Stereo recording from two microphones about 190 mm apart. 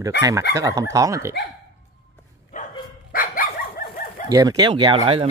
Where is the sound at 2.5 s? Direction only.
40° left (ahead or behind).